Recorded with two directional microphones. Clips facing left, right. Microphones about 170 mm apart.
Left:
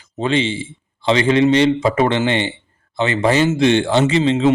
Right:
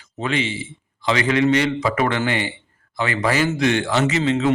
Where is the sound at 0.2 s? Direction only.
30° left (ahead or behind).